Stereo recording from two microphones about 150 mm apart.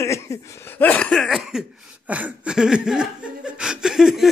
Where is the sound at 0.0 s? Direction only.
20° left (ahead or behind).